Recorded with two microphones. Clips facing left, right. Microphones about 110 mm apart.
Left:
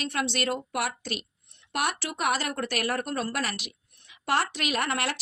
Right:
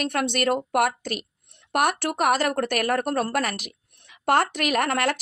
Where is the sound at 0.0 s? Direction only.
55° right (ahead or behind).